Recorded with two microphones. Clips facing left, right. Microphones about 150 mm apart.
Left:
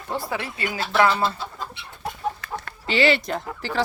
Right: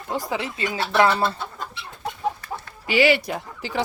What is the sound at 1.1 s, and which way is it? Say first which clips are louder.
Speech: right 1 dB; 60° right (ahead or behind).